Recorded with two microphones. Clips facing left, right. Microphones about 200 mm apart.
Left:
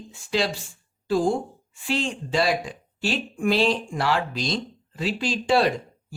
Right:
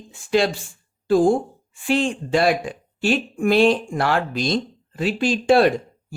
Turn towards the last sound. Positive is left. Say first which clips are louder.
# right 5 dB
turn(degrees=-55)  # may be behind; listen again after turning